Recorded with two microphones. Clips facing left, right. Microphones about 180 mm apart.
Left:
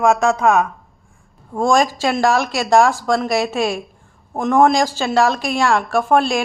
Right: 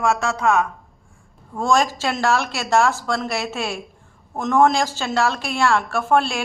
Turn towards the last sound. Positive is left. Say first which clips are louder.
# left 4 dB
turn(degrees=15)  # may be behind; listen again after turning